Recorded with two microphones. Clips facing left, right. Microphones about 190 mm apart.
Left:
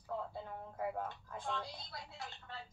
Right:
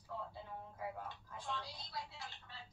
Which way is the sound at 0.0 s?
55° left (ahead or behind).